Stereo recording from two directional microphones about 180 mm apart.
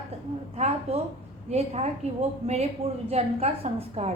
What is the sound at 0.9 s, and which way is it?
Speech, 35° right (ahead or behind).